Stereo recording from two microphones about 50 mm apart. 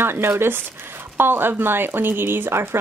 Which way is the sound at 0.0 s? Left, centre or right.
Right.